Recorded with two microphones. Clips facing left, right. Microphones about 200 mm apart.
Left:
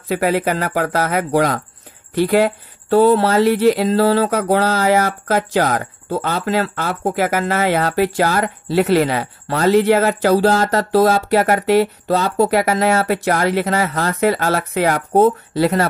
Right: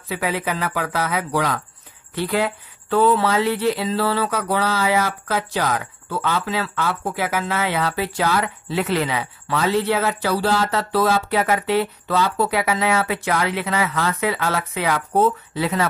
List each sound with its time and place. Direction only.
0.1 s speech: 45° left (ahead or behind)